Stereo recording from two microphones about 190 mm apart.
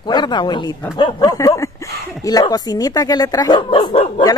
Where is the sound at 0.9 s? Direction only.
25° left (ahead or behind).